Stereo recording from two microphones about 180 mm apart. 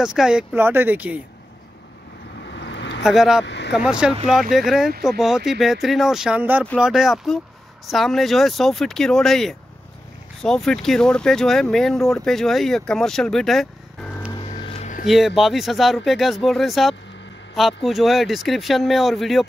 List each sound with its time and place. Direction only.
0.0 s speech: 5° right (ahead or behind)
2.4 s vehicle: 75° left (ahead or behind)
3.0 s speech: 5° right (ahead or behind)
3.4 s speech: 75° left (ahead or behind)
3.7 s speech: 5° right (ahead or behind)
14.6 s a sound: 35° left (ahead or behind)
15.0 s speech: centre (ahead or behind)